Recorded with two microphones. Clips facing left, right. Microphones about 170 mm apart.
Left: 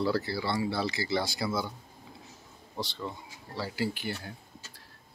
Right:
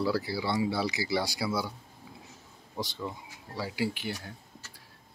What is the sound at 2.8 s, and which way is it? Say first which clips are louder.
Speech: right 1 dB; 10° right (ahead or behind).